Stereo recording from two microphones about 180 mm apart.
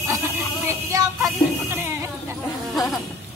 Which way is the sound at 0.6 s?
20° right (ahead or behind).